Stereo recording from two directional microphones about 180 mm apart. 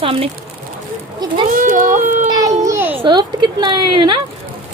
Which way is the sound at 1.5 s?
50° right (ahead or behind).